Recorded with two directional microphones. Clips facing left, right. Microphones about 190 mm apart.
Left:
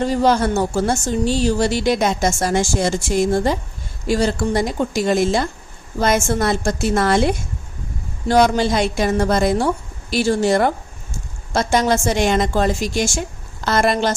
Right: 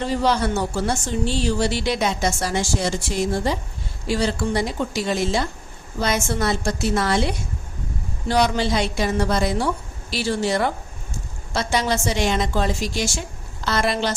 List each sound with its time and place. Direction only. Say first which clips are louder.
0.0 s a woman's voice: left 4 dB; 45° left (ahead or behind)